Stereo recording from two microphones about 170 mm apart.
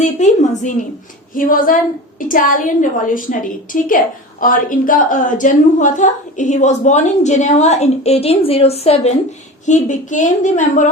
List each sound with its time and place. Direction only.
0.0 s a woman's voice: 45° left (ahead or behind)
1.3 s a woman's voice: 55° left (ahead or behind); by 9.1 s 35° left (ahead or behind)
9.6 s a woman's voice: 45° left (ahead or behind)